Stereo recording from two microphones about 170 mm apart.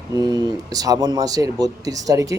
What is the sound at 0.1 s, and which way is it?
Speech, 25° right (ahead or behind).